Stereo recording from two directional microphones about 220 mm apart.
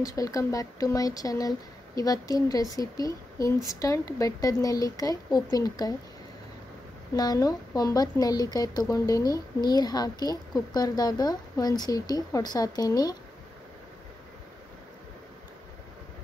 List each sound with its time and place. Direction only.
0.0 s a woman's voice: 15° left (ahead or behind)
7.2 s a woman's voice: 15° left (ahead or behind)